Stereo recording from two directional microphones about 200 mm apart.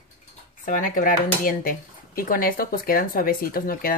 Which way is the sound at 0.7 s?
45° left (ahead or behind).